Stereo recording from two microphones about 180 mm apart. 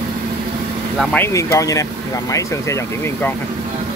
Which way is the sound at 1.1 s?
15° left (ahead or behind).